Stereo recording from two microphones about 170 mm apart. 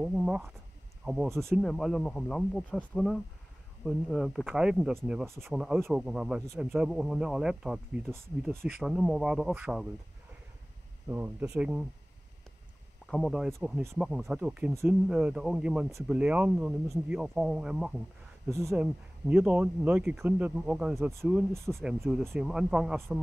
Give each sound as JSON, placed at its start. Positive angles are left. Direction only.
{"t": 0.0, "sound": "speech", "side_deg": -5}
{"t": 11.1, "sound": "speech", "side_deg": -10}
{"t": 13.0, "sound": "speech", "side_deg": 5}
{"t": 18.5, "sound": "speech", "side_deg": -15}
{"t": 18.8, "sound": "speech", "side_deg": -5}